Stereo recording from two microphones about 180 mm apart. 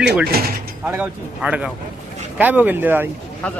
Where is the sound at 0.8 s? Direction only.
10° right (ahead or behind).